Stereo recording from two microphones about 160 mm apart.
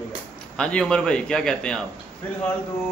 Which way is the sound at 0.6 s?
5° left (ahead or behind).